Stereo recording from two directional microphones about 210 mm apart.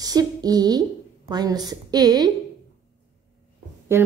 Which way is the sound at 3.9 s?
10° right (ahead or behind).